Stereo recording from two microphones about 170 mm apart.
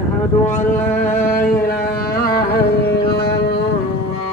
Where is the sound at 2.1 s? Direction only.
60° left (ahead or behind).